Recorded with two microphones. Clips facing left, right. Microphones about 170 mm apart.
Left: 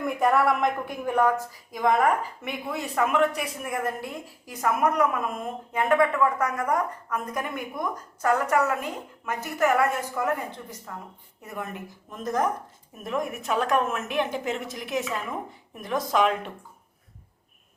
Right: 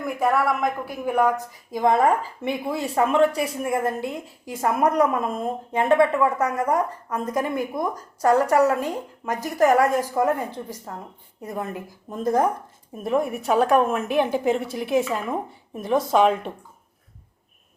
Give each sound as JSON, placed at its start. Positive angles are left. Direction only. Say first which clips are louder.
{"t": 0.0, "sound": "a woman's voice", "louder": "even", "side_deg": 0}
{"t": 1.7, "sound": "speech", "louder": "right 3 dB", "side_deg": -30}